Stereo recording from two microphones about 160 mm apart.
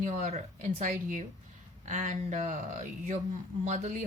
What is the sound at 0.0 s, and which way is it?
Speech, 45° right (ahead or behind).